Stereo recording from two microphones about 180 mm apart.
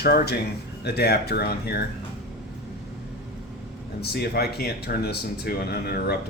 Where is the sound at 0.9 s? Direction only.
60° left (ahead or behind).